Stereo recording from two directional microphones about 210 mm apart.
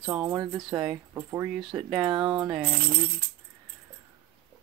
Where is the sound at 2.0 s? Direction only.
20° right (ahead or behind).